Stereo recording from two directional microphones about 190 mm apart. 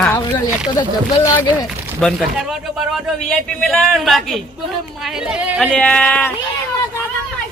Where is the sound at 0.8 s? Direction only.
20° left (ahead or behind).